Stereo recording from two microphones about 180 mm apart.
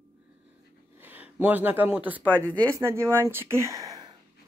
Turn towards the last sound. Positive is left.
turn(degrees=-20)  # may be behind; listen again after turning